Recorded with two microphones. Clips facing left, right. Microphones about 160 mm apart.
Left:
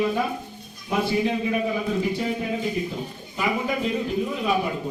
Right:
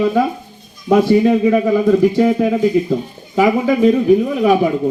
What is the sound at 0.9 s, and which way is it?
A man's voice, 75° right (ahead or behind).